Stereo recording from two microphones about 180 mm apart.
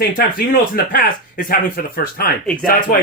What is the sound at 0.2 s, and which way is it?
Speech, 55° left (ahead or behind).